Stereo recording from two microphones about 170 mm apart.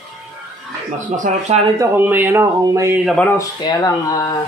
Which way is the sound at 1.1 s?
50° right (ahead or behind).